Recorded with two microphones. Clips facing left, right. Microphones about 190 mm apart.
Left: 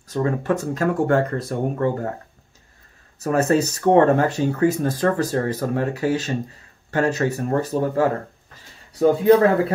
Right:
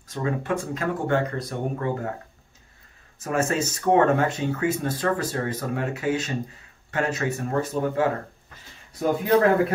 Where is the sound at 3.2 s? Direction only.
35° left (ahead or behind).